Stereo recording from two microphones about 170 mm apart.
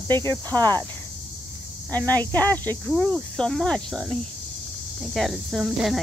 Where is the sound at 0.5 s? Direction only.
25° right (ahead or behind).